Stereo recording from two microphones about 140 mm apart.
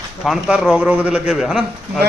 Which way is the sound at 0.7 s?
10° right (ahead or behind).